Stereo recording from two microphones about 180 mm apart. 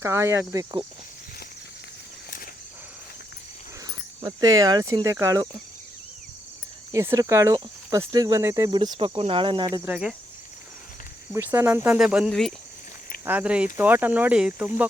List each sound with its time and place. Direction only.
0.0 s speech: 15° right (ahead or behind)
4.2 s speech: 20° right (ahead or behind)
6.9 s speech: 15° right (ahead or behind)
9.8 s speech: 5° right (ahead or behind)
11.3 s speech: 10° right (ahead or behind)